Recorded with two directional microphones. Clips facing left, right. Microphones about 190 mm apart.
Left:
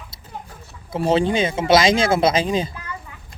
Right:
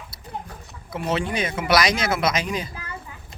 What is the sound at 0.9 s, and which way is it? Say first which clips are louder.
Speech: left 7 dB; 30° left (ahead or behind).